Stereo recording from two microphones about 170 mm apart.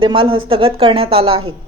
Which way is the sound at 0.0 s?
30° right (ahead or behind).